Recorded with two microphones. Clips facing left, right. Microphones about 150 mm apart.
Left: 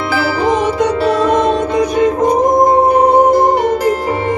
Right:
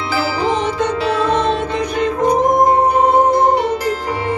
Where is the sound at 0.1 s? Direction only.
50° left (ahead or behind).